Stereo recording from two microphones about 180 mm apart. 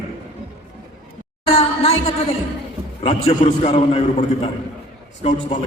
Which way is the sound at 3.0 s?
35° left (ahead or behind).